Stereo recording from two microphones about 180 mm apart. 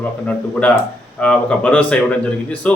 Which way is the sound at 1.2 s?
5° left (ahead or behind).